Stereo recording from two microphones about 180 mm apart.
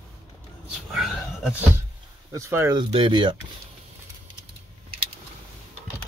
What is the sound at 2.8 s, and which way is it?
Speech, 30° right (ahead or behind).